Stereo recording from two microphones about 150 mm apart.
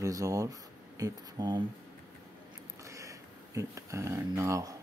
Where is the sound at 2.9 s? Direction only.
20° right (ahead or behind).